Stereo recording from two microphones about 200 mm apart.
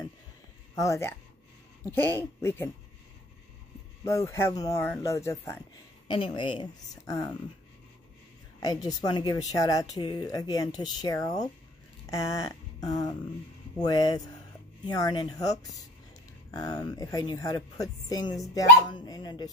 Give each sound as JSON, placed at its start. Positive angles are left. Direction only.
{"t": 0.7, "sound": "speech", "side_deg": 15}
{"t": 4.0, "sound": "speech", "side_deg": 15}
{"t": 6.0, "sound": "speech", "side_deg": 25}
{"t": 8.5, "sound": "speech", "side_deg": 20}